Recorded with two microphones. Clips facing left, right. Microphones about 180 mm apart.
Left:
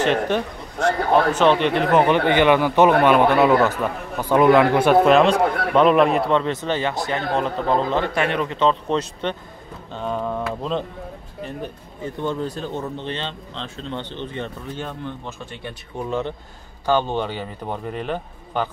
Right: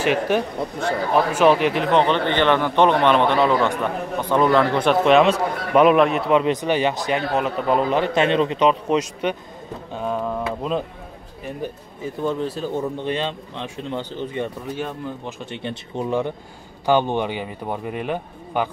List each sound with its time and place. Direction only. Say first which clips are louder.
0.0 s speech: even; 10° right (ahead or behind)
6.3 s speech: right 3 dB; 15° right (ahead or behind)
12.0 s speech: right 1 dB; 5° right (ahead or behind)
15.2 s speech: right 4 dB; 20° right (ahead or behind)